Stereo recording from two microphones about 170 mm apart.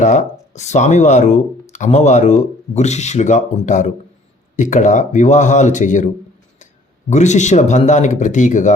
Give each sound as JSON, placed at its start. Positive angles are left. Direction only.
{"t": 0.0, "sound": "speech", "side_deg": 45}
{"t": 7.1, "sound": "speech", "side_deg": 45}